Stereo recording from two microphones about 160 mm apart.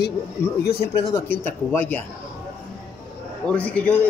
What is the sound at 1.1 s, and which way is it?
Speech, 10° left (ahead or behind).